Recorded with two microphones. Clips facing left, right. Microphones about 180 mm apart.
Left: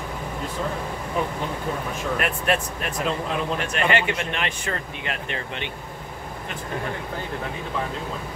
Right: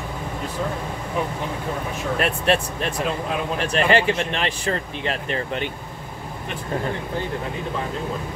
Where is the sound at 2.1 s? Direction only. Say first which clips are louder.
Right 4 dB; 30° right (ahead or behind).